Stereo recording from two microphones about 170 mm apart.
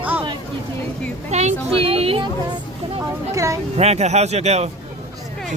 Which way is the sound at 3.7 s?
40° right (ahead or behind).